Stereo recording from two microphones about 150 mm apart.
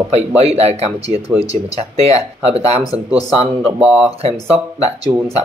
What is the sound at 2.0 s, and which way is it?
Speech, 40° right (ahead or behind).